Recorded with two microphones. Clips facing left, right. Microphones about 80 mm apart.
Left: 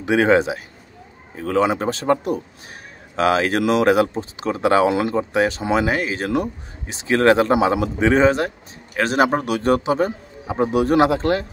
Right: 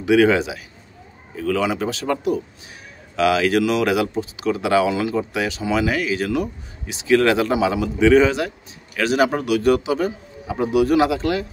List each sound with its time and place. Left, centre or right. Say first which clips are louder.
0.0 s a man's voice: even; left